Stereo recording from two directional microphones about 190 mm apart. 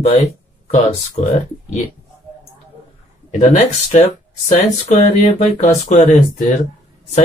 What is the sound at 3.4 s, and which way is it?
Speech, 40° left (ahead or behind).